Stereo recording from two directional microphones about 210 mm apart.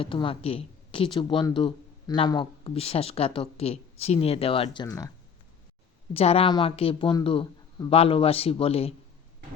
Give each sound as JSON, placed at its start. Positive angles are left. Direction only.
{"t": 0.0, "sound": "speech", "side_deg": 25}
{"t": 6.1, "sound": "speech", "side_deg": 30}